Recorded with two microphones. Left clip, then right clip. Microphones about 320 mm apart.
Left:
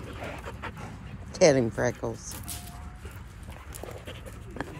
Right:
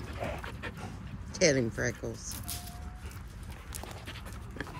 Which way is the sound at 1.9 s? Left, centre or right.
Left.